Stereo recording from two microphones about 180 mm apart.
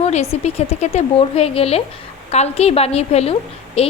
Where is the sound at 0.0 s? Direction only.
35° left (ahead or behind).